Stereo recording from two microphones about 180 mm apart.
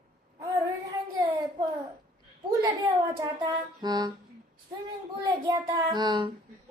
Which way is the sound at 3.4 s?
20° right (ahead or behind).